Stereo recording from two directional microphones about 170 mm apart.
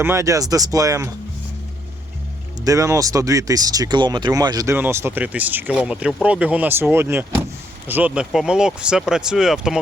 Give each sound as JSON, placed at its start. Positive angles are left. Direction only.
{"t": 0.0, "sound": "speech", "side_deg": -15}
{"t": 2.6, "sound": "speech", "side_deg": -20}